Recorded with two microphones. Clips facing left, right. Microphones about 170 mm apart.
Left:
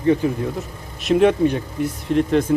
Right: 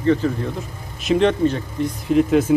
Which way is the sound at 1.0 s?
5° left (ahead or behind).